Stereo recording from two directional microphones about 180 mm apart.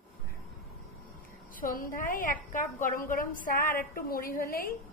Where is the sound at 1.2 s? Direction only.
50° left (ahead or behind).